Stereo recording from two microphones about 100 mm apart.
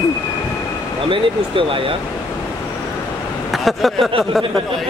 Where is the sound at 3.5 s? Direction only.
Centre (ahead or behind).